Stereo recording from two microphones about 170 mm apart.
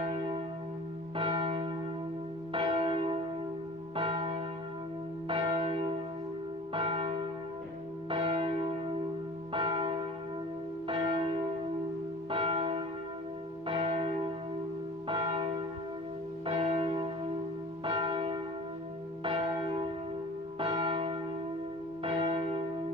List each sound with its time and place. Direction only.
0.0 s church bell: 30° right (ahead or behind)